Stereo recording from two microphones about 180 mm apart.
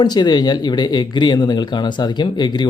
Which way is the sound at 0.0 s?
25° left (ahead or behind).